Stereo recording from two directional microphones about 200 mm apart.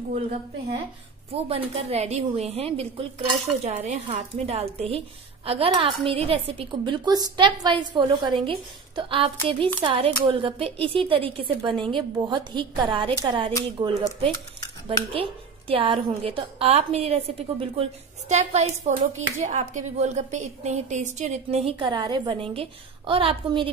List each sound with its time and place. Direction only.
1.3 s a woman's voice: 30° right (ahead or behind)